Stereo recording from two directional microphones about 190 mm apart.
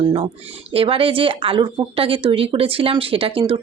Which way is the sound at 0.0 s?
25° right (ahead or behind).